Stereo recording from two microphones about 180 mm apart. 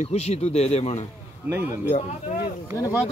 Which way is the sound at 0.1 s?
35° left (ahead or behind).